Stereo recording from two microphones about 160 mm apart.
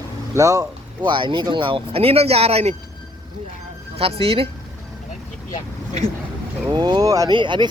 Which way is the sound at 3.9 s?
40° right (ahead or behind).